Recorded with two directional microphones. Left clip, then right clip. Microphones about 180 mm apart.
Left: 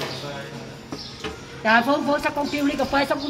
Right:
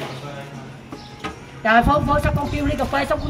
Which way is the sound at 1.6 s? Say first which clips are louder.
Right 3 dB; centre (ahead or behind).